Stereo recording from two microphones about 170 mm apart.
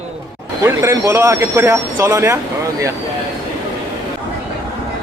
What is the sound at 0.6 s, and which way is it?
Speech, 15° right (ahead or behind).